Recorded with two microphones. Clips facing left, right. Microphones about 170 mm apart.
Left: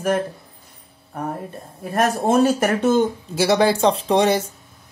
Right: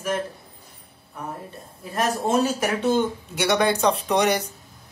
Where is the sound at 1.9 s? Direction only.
55° left (ahead or behind).